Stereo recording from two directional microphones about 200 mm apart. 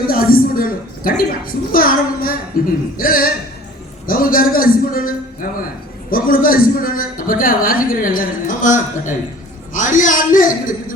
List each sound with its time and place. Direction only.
0.1 s a man's voice: 45° left (ahead or behind)